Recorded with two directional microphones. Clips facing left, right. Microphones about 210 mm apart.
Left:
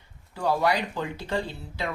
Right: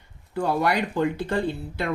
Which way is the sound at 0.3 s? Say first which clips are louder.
Right 2 dB; 55° right (ahead or behind).